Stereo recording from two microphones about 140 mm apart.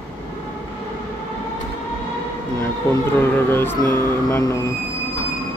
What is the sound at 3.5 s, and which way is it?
A man's voice, 15° left (ahead or behind).